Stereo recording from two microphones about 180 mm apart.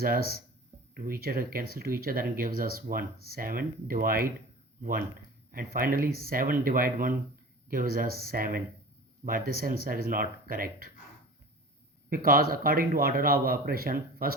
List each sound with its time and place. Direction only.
0.0 s speech: 55° right (ahead or behind)
12.1 s speech: 55° right (ahead or behind)